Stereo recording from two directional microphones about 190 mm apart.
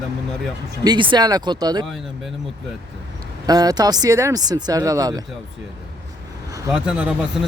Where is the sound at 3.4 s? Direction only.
20° right (ahead or behind).